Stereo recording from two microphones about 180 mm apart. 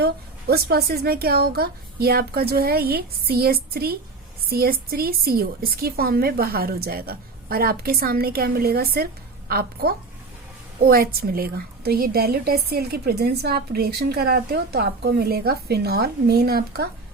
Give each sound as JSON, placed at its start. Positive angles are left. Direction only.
{"t": 0.0, "sound": "a woman's voice", "side_deg": -60}